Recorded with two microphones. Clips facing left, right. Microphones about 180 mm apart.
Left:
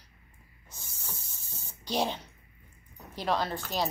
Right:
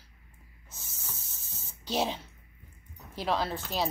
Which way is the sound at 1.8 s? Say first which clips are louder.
Even; 5° right (ahead or behind).